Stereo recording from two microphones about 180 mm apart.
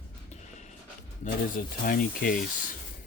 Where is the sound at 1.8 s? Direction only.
50° left (ahead or behind).